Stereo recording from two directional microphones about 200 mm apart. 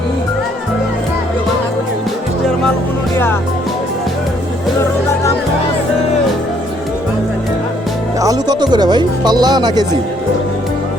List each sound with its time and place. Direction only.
8.2 s speech: 20° right (ahead or behind)